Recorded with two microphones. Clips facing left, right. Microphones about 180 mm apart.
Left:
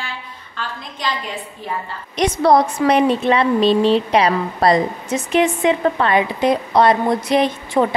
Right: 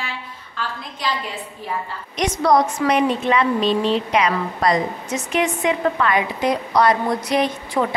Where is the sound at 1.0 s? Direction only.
5° right (ahead or behind).